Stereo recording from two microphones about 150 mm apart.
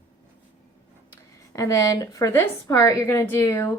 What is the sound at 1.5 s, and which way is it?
A woman's voice, 20° left (ahead or behind).